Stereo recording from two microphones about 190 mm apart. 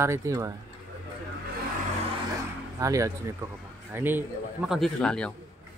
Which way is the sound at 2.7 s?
15° right (ahead or behind).